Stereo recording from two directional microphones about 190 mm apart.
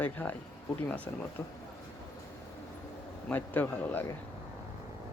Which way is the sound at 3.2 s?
10° left (ahead or behind).